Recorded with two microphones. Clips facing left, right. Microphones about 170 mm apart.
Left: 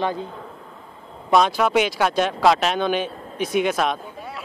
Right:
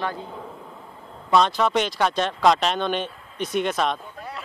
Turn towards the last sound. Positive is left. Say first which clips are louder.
# left 2 dB
turn(degrees=5)  # may be behind; listen again after turning